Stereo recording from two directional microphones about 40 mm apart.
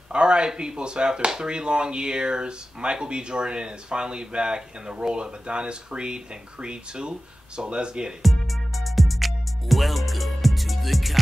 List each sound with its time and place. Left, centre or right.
0.1 s speech: right
8.2 s music: centre